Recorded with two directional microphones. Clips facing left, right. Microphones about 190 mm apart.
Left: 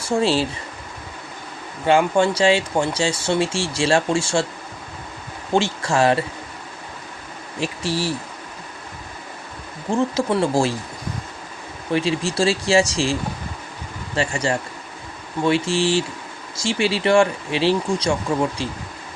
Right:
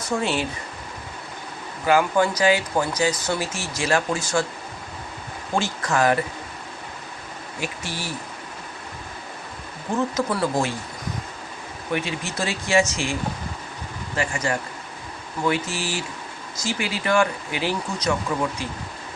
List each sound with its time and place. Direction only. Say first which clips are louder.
0.2 s speech: left 8 dB; 30° left (ahead or behind)
1.9 s speech: left 3 dB; 25° left (ahead or behind)
5.5 s speech: left 4 dB; 25° left (ahead or behind)
7.6 s speech: left 7 dB; 30° left (ahead or behind)
9.9 s speech: left 4 dB; 30° left (ahead or behind)
11.9 s speech: left 6 dB; 30° left (ahead or behind)
14.2 s speech: left 3 dB; 30° left (ahead or behind)